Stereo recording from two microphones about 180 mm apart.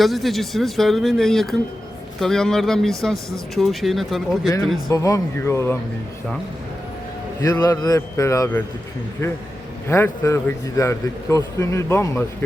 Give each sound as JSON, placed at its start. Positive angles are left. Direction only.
{"t": 0.0, "sound": "speech", "side_deg": 0}
{"t": 4.9, "sound": "a man's voice", "side_deg": 20}
{"t": 7.4, "sound": "a man's voice", "side_deg": 20}
{"t": 9.9, "sound": "a man's voice", "side_deg": 15}